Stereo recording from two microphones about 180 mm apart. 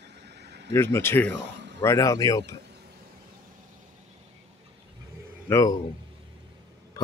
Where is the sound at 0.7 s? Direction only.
15° left (ahead or behind).